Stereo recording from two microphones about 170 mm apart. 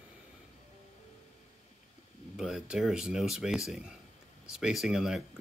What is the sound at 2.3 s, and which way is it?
Speech, 5° right (ahead or behind).